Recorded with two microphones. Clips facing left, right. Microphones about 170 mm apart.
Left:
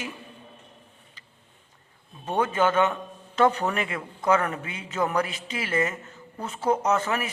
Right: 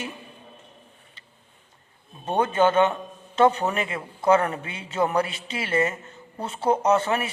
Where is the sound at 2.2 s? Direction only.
30° right (ahead or behind).